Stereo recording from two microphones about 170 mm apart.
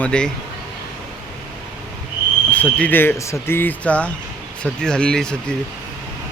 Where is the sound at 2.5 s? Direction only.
10° left (ahead or behind).